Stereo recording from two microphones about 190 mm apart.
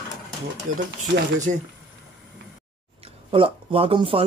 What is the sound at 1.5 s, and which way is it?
Speech, 40° right (ahead or behind).